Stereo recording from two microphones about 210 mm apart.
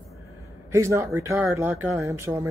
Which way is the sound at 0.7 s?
15° right (ahead or behind).